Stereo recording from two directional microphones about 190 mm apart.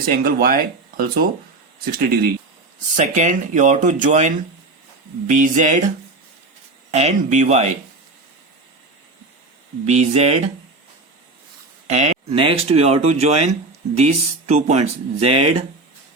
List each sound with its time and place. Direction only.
0.1 s speech: 50° right (ahead or behind)
2.9 s speech: 40° right (ahead or behind)
5.3 s speech: 40° right (ahead or behind)
6.9 s speech: 35° right (ahead or behind)
9.8 s speech: 35° right (ahead or behind)
11.9 s speech: 35° right (ahead or behind)